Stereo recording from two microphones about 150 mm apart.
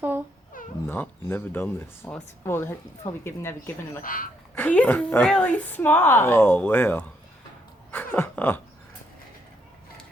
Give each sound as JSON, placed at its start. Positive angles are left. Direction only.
{"t": 0.5, "sound": "dog", "side_deg": 65}
{"t": 0.9, "sound": "speech", "side_deg": 15}
{"t": 4.0, "sound": "speech", "side_deg": 65}
{"t": 4.5, "sound": "speech", "side_deg": 10}
{"t": 7.9, "sound": "a sound", "side_deg": 15}